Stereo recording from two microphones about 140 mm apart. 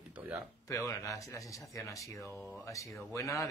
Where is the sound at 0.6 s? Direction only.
20° left (ahead or behind).